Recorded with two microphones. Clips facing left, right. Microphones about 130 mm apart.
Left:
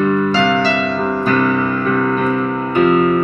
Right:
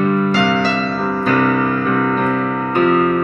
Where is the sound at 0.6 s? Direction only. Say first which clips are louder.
Left 2 dB; 40° right (ahead or behind).